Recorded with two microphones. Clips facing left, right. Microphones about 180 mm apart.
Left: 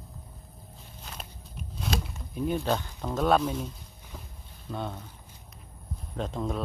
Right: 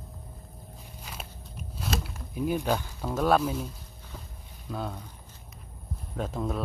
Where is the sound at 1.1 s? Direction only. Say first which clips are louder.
Right 1 dB; 10° right (ahead or behind).